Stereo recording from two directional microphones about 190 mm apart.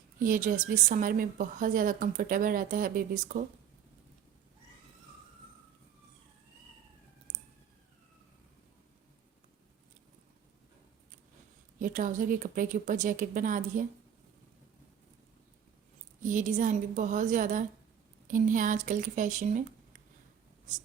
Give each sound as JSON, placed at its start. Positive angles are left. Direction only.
{"t": 0.2, "sound": "a woman's voice", "side_deg": -45}
{"t": 11.8, "sound": "a woman's voice", "side_deg": -45}
{"t": 16.2, "sound": "a woman's voice", "side_deg": -40}